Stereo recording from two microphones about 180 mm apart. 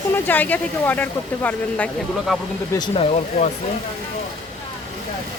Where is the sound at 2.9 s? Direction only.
35° left (ahead or behind).